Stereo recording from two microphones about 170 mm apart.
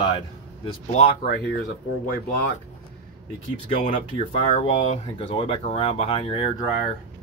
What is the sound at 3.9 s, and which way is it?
Speech, 30° left (ahead or behind).